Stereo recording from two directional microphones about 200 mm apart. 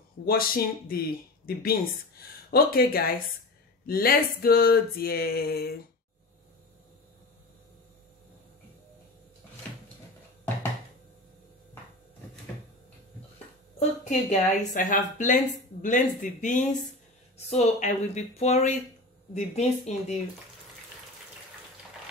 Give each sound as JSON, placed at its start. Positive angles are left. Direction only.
{"t": 0.2, "sound": "speech", "side_deg": 50}
{"t": 13.7, "sound": "speech", "side_deg": 35}